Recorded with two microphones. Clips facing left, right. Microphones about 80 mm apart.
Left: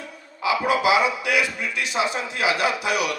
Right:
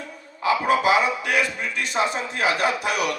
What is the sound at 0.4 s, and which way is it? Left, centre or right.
A man's voice, right.